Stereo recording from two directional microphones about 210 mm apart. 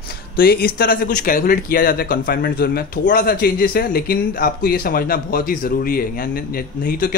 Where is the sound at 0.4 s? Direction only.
45° left (ahead or behind).